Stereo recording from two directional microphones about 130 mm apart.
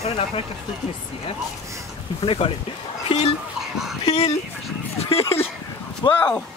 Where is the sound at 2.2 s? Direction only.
45° left (ahead or behind).